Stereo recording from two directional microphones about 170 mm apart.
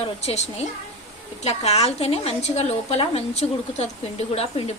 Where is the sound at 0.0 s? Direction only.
35° left (ahead or behind).